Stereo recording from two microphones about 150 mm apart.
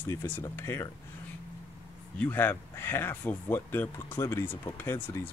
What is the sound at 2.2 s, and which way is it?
Speech, 15° left (ahead or behind).